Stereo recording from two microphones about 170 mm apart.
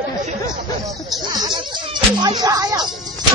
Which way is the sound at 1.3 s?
30° right (ahead or behind).